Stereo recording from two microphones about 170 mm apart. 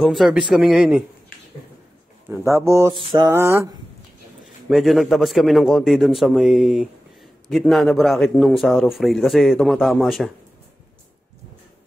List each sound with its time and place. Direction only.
0.0 s a man's voice: centre (ahead or behind)
2.2 s speech: 15° right (ahead or behind)
4.6 s a man's voice: centre (ahead or behind)